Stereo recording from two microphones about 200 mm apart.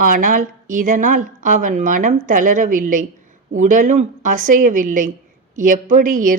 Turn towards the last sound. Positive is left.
turn(degrees=-40)  # may be behind; listen again after turning